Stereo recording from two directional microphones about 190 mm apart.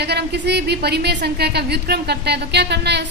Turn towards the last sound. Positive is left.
turn(degrees=-60)  # may be behind; listen again after turning